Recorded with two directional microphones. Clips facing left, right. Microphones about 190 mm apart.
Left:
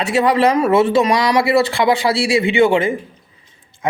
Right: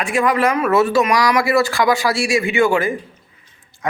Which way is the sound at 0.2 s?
30° left (ahead or behind).